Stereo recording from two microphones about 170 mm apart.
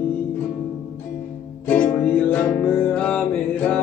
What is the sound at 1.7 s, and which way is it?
Music, 10° left (ahead or behind).